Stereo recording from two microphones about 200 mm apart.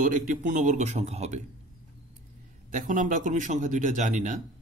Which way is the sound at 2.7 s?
40° right (ahead or behind).